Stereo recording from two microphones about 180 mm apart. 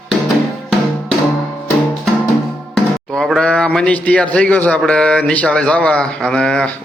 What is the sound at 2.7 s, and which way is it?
Speech, centre (ahead or behind).